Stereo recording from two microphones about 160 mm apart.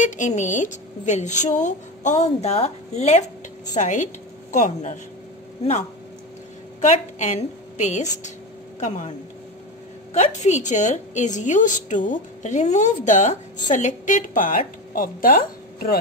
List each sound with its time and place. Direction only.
0.0 s a woman's voice: 50° left (ahead or behind)
7.2 s a woman's voice: 45° left (ahead or behind)
10.1 s a woman's voice: 50° left (ahead or behind); by 16.0 s 65° left (ahead or behind)